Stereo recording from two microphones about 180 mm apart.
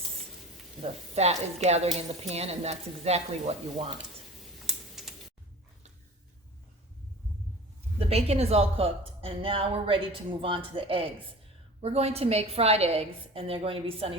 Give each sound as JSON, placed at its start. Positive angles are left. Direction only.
{"t": 0.8, "sound": "a woman's voice", "side_deg": -35}
{"t": 4.6, "sound": "computer keyboard", "side_deg": 0}
{"t": 7.9, "sound": "a woman's voice", "side_deg": -35}